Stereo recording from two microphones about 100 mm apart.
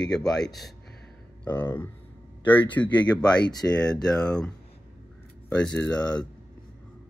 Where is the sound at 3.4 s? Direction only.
40° left (ahead or behind).